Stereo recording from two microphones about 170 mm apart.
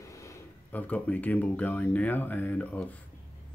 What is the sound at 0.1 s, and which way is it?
Speech, 20° left (ahead or behind).